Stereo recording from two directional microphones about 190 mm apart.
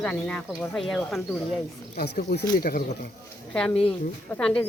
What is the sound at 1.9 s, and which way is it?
Speech, 60° left (ahead or behind).